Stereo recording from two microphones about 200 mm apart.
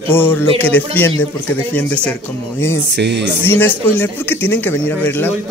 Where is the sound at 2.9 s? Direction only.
60° right (ahead or behind).